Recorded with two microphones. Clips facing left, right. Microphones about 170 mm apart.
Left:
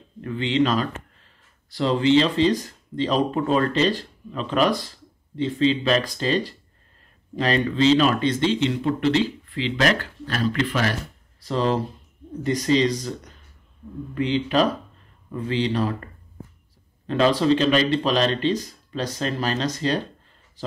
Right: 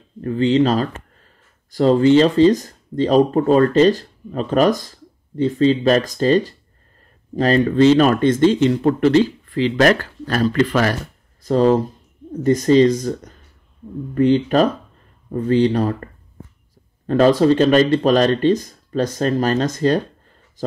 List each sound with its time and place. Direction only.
0.2 s speech: 40° right (ahead or behind)